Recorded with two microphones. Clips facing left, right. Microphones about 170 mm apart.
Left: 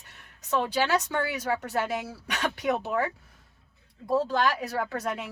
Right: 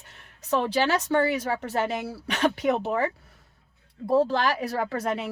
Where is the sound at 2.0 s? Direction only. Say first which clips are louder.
Right 6 dB; 30° right (ahead or behind).